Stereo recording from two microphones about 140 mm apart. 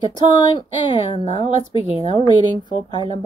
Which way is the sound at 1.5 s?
50° right (ahead or behind).